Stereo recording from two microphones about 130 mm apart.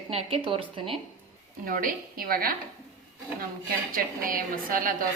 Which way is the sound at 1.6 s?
90° right.